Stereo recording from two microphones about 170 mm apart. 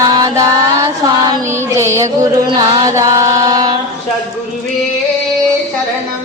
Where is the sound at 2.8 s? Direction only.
20° right (ahead or behind).